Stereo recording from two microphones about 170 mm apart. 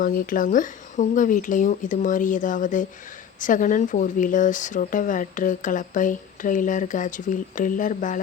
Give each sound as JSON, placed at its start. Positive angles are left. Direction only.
{"t": 0.0, "sound": "speech", "side_deg": 55}